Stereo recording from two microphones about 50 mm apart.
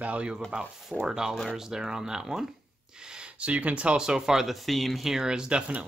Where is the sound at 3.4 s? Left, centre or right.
Right.